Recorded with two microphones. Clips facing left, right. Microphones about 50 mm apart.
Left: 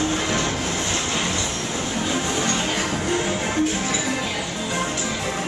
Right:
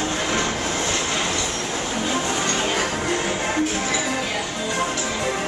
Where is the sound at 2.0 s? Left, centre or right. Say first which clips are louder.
Even; centre.